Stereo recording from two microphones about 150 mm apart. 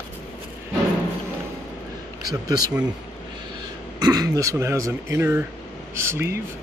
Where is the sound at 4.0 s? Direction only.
25° right (ahead or behind).